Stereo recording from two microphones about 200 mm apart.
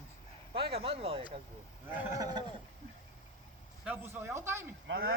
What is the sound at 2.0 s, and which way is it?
Speech, 20° right (ahead or behind).